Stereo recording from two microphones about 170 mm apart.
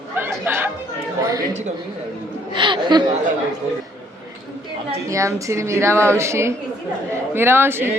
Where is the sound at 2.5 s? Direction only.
30° right (ahead or behind).